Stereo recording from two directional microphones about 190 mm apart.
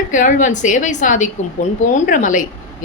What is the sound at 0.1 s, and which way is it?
A woman's voice, 40° left (ahead or behind).